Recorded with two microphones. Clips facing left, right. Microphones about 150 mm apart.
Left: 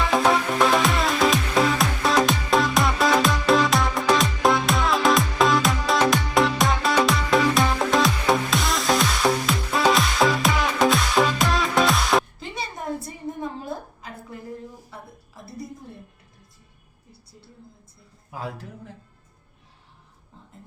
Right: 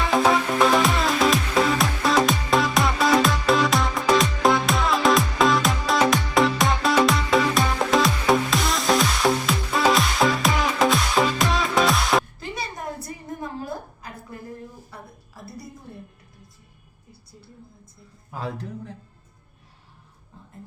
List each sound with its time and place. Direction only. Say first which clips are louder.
0.1 s music: right 2 dB; centre (ahead or behind)
12.4 s a sound: even; 25° left (ahead or behind)
18.3 s speech: right 2 dB; 10° left (ahead or behind)